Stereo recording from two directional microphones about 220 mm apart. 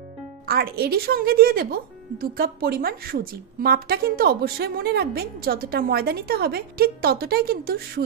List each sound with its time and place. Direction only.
0.5 s a woman's voice: 45° right (ahead or behind)